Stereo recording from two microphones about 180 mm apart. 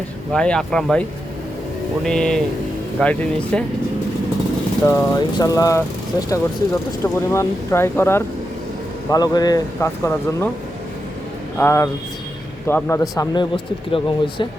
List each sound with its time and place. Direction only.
0.3 s speech: 5° left (ahead or behind)
2.0 s speech: 5° left (ahead or behind)
4.9 s speech: 20° left (ahead or behind)
11.5 s speech: 10° left (ahead or behind); by 14.4 s 25° left (ahead or behind)